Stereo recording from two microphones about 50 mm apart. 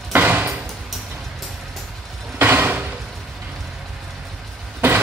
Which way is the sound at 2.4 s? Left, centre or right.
Right.